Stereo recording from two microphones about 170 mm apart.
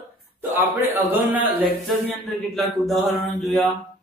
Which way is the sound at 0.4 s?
10° right (ahead or behind).